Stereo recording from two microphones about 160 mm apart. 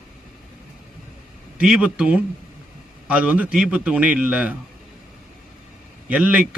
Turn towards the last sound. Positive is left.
turn(degrees=-5)  # may be behind; listen again after turning